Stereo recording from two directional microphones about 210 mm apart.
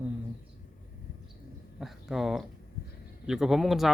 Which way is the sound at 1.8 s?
Centre (ahead or behind).